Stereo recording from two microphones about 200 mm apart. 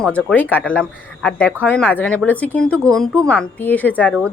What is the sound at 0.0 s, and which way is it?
Speech, 5° left (ahead or behind).